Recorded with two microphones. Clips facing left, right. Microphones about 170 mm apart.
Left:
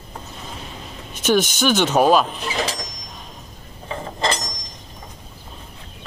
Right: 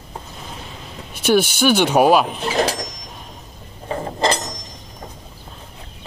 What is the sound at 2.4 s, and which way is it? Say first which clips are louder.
Speech: right 5 dB; 45° right (ahead or behind).